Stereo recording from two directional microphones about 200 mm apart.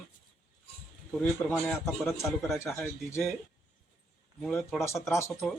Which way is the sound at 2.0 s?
15° left (ahead or behind).